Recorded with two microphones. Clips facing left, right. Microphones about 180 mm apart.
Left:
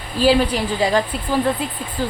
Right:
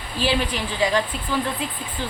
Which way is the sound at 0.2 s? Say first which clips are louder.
Left 7 dB; 40° left (ahead or behind).